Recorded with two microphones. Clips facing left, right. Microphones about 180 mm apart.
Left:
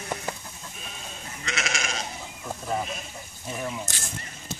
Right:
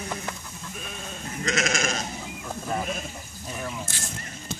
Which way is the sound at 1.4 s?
40° right (ahead or behind).